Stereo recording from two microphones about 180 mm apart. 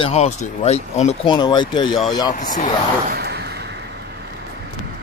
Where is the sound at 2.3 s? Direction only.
45° left (ahead or behind).